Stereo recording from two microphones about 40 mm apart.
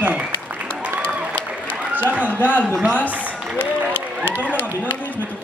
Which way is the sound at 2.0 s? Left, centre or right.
Right.